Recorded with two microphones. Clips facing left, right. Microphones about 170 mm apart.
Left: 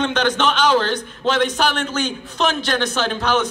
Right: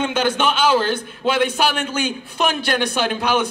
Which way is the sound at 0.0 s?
10° right (ahead or behind).